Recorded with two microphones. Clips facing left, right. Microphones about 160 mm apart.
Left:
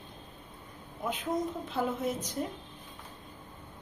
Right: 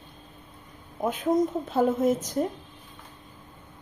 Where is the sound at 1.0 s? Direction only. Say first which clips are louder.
Right 7 dB; 45° right (ahead or behind).